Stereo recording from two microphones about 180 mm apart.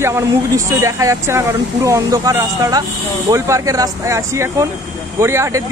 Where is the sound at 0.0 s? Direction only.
15° right (ahead or behind).